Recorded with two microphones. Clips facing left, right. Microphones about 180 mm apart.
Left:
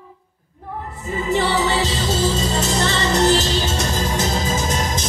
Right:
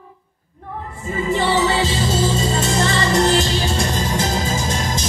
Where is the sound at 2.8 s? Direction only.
20° left (ahead or behind).